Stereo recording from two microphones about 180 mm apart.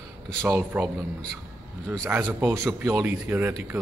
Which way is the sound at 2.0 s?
10° right (ahead or behind).